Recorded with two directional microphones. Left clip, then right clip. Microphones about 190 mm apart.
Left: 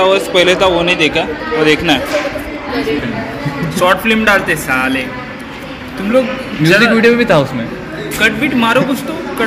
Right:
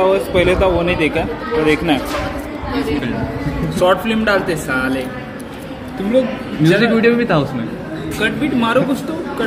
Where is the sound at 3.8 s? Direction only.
Centre (ahead or behind).